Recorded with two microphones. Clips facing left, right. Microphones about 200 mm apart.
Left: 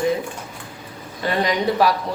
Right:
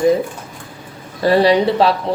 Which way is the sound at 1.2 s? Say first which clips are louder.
Right 9 dB; 35° right (ahead or behind).